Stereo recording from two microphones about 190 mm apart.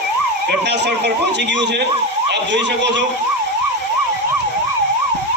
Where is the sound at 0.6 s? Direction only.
65° right (ahead or behind).